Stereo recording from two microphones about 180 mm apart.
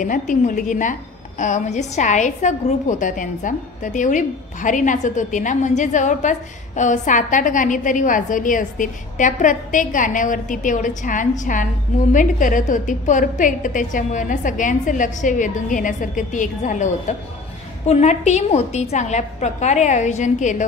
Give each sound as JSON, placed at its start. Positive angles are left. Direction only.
{"t": 0.0, "sound": "a woman's voice", "side_deg": 45}